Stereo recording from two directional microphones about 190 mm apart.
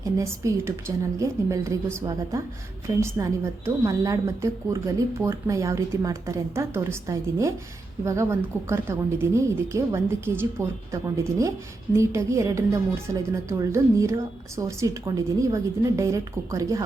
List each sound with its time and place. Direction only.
0.0 s a woman's voice: 15° right (ahead or behind)